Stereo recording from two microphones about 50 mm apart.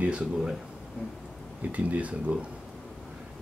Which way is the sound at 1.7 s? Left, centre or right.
Right.